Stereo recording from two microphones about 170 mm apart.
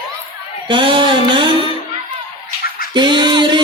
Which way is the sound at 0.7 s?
30° right (ahead or behind).